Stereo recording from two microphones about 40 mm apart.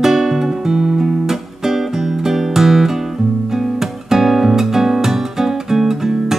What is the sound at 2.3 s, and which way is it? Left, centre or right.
Music, centre.